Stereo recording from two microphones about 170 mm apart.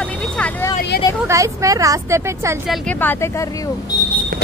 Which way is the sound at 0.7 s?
70° left (ahead or behind).